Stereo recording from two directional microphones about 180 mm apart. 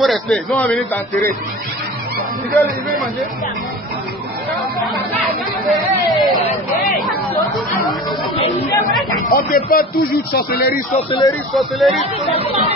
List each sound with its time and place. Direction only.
0.0 s speech: centre (ahead or behind)
2.5 s speech: centre (ahead or behind)
5.7 s chatter: centre (ahead or behind)
7.5 s chatter: centre (ahead or behind)
9.2 s speech: 55° left (ahead or behind)
11.0 s speech: 25° left (ahead or behind)
11.5 s speech: centre (ahead or behind)
12.4 s speech: 30° right (ahead or behind)